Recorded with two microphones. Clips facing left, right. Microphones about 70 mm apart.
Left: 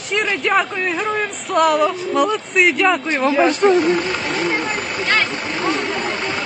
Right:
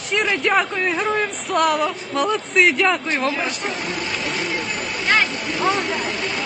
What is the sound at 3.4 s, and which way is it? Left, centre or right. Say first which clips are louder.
Speech: left 12 dB; left.